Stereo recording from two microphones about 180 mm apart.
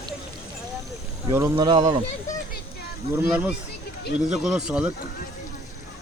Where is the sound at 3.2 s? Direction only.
10° right (ahead or behind).